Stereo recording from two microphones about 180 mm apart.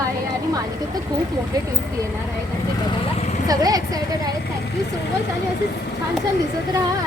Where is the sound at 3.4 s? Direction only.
20° right (ahead or behind).